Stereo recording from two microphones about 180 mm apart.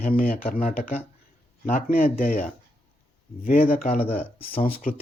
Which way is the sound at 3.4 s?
50° left (ahead or behind).